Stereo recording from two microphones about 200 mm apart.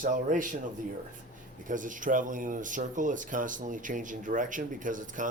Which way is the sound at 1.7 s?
40° right (ahead or behind).